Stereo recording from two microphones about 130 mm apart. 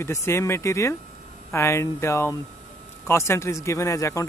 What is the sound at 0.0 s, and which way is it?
Speech, 20° left (ahead or behind).